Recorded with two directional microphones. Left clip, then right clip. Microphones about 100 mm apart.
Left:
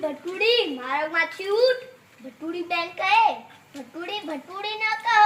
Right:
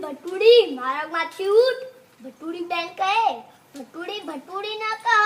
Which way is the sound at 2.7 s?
35° right (ahead or behind).